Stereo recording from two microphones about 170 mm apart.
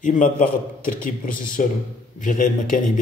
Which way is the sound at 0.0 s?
55° left (ahead or behind).